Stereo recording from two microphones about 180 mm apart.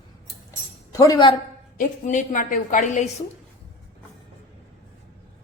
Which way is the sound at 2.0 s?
45° left (ahead or behind).